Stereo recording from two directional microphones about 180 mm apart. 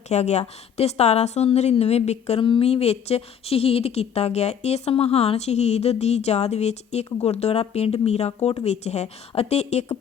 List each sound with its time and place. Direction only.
0.1 s a woman's voice: 40° left (ahead or behind)